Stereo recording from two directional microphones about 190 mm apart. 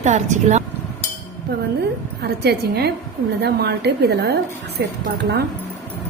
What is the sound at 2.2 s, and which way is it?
A woman's voice, 60° right (ahead or behind).